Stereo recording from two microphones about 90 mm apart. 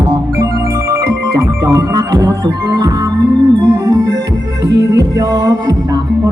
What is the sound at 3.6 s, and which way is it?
Organ, 40° right (ahead or behind).